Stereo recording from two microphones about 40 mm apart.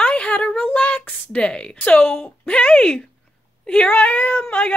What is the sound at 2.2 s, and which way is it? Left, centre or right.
Speech, left.